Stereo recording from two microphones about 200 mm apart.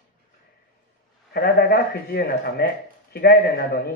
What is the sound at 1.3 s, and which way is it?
A man's voice, 50° left (ahead or behind).